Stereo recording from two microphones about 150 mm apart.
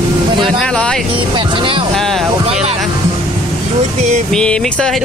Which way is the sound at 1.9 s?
Centre (ahead or behind).